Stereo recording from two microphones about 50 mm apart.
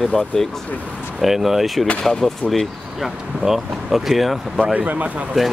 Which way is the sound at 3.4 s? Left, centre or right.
Centre.